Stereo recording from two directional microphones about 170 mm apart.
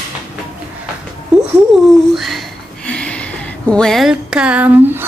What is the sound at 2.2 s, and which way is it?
Speech, centre (ahead or behind).